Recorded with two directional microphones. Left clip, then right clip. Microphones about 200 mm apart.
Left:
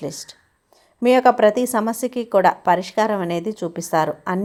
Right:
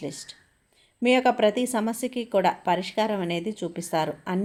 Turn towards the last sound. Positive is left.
turn(degrees=15)  # may be behind; listen again after turning